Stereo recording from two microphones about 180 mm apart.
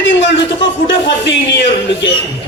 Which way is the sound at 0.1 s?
85° left.